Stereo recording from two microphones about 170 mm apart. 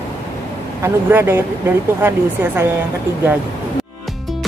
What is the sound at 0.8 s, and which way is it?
Speech, 15° right (ahead or behind).